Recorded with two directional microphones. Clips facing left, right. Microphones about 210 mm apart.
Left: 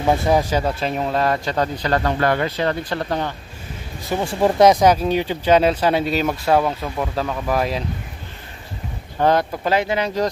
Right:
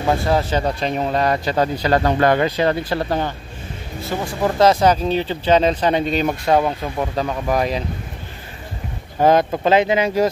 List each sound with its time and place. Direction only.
0.2 s speech: 15° left (ahead or behind); by 3.3 s 5° right (ahead or behind)
4.2 s speech: 30° left (ahead or behind)
4.6 s speech: 15° left (ahead or behind)
9.2 s speech: 20° right (ahead or behind)